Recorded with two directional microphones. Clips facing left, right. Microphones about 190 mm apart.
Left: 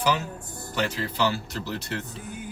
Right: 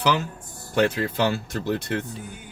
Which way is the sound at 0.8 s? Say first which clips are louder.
Right 5 dB; 55° right (ahead or behind).